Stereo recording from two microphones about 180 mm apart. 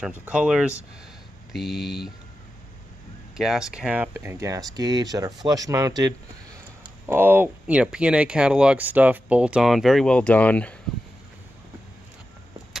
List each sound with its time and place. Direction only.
0.0 s speech: 5° right (ahead or behind)
3.3 s speech: centre (ahead or behind)